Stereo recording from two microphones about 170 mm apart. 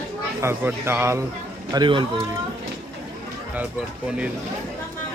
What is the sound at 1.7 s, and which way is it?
Speech, 25° right (ahead or behind).